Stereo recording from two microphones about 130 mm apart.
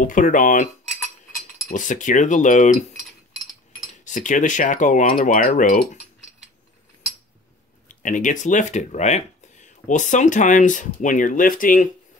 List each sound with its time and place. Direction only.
0.0 s speech: 90° left
1.7 s speech: 80° left
4.0 s speech: 70° left (ahead or behind); by 5.9 s 90° left
7.9 s speech: 80° left